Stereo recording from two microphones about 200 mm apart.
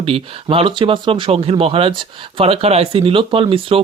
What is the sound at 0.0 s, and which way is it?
Speech, 25° right (ahead or behind).